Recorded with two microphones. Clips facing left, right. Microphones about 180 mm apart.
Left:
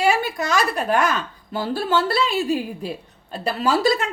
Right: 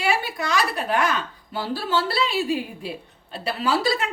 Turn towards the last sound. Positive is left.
turn(degrees=45)  # may be behind; listen again after turning